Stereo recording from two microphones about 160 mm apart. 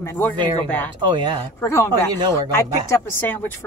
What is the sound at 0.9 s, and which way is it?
Speech, 30° right (ahead or behind).